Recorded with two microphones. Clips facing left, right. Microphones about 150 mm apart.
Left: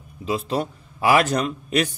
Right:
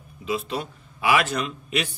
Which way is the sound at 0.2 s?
35° left (ahead or behind).